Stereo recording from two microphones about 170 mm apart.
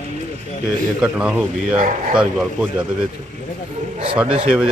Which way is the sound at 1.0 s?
5° right (ahead or behind).